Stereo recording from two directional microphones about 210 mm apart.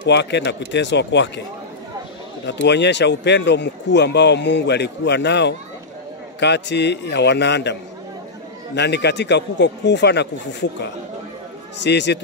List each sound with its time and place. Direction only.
0.0 s speech: 55° left (ahead or behind)
2.4 s speech: 55° left (ahead or behind)
8.7 s speech: 55° left (ahead or behind)
11.8 s speech: 55° left (ahead or behind)